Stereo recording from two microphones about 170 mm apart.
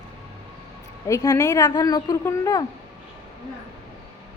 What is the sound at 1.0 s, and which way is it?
A woman's voice, 20° left (ahead or behind).